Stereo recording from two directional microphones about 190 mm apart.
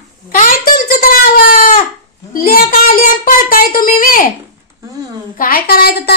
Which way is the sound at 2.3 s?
50° left (ahead or behind).